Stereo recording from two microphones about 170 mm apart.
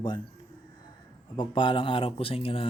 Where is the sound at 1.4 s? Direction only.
30° left (ahead or behind).